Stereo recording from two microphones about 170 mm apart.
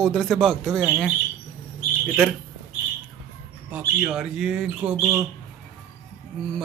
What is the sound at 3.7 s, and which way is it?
Speech, 5° right (ahead or behind).